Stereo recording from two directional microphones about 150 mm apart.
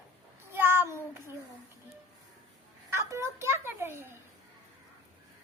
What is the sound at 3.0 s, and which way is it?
Speech, 20° right (ahead or behind).